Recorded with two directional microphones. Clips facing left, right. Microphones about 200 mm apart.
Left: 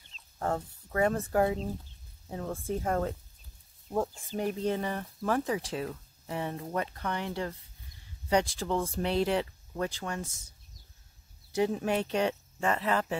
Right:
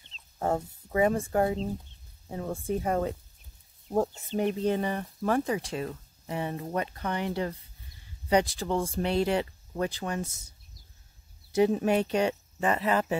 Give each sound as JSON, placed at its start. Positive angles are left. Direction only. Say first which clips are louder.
{"t": 0.4, "sound": "speech", "louder": "right 3 dB", "side_deg": -10}
{"t": 1.3, "sound": "speech", "louder": "right 1 dB", "side_deg": 0}
{"t": 3.9, "sound": "speech", "louder": "right 4 dB", "side_deg": -25}
{"t": 4.6, "sound": "speech", "louder": "right 3 dB", "side_deg": -5}
{"t": 10.0, "sound": "speech", "louder": "right 4 dB", "side_deg": -15}
{"t": 11.5, "sound": "speech", "louder": "right 5 dB", "side_deg": -20}
{"t": 11.8, "sound": "speech", "louder": "right 3 dB", "side_deg": -10}
{"t": 12.3, "sound": "speech", "louder": "right 2 dB", "side_deg": -15}